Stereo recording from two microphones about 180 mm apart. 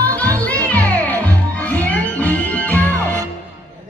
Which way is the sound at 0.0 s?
10° left (ahead or behind).